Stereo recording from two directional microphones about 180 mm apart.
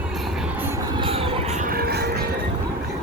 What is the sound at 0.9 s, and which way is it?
Vehicle, 30° right (ahead or behind).